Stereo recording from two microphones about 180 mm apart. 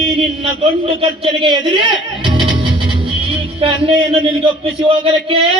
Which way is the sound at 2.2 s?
30° right (ahead or behind).